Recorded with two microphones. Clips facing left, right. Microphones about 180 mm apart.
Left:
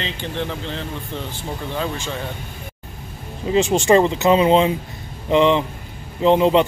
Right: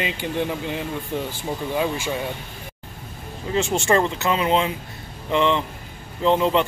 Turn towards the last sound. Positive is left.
turn(degrees=20)  # may be behind; listen again after turning